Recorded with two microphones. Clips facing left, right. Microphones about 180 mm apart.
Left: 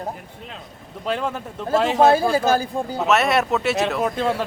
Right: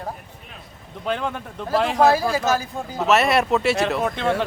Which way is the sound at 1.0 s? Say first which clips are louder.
Left 1 dB; 5° left (ahead or behind).